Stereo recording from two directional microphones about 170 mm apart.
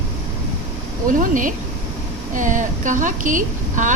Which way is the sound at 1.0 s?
50° right (ahead or behind).